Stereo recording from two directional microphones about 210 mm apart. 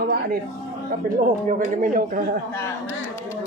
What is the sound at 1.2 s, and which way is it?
Speech, 40° right (ahead or behind).